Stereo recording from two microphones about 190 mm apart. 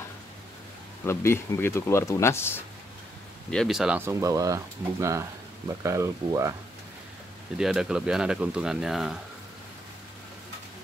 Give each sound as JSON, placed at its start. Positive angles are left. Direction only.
{"t": 1.0, "sound": "speech", "side_deg": 15}
{"t": 3.4, "sound": "speech", "side_deg": 0}
{"t": 7.5, "sound": "speech", "side_deg": -5}